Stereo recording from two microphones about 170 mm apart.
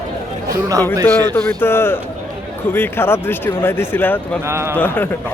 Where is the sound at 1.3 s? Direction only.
10° left (ahead or behind).